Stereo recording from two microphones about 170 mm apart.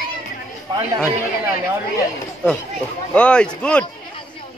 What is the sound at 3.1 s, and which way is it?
Speech, 5° left (ahead or behind).